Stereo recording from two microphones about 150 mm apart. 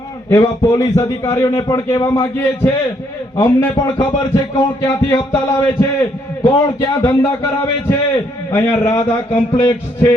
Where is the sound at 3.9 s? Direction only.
30° left (ahead or behind).